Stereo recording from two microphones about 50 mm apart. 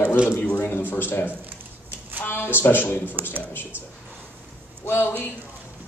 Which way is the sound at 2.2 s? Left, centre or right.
Left.